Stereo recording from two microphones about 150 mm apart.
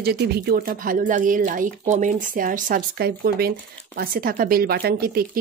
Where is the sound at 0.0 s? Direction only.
90° right.